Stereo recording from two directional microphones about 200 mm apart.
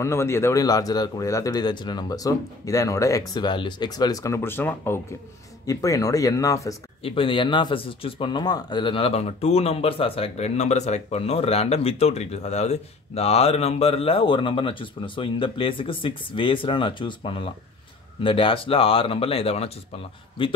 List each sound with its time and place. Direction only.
0.0 s speech: 15° left (ahead or behind)
7.0 s speech: 25° left (ahead or behind)